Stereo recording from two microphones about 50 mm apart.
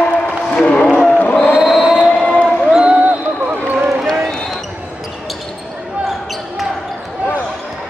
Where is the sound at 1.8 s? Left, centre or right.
Centre.